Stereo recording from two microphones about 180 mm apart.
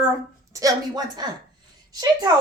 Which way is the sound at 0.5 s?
20° right (ahead or behind).